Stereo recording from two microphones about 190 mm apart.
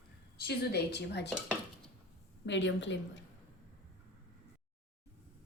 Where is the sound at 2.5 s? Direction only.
65° left (ahead or behind).